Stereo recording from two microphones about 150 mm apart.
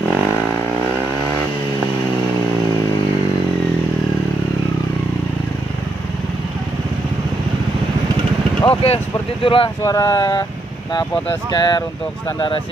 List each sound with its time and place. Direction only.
8.8 s speech: 40° left (ahead or behind)
9.8 s speech: 25° left (ahead or behind)